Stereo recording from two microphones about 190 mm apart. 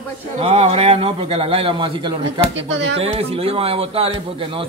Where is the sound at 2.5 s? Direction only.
70° right (ahead or behind).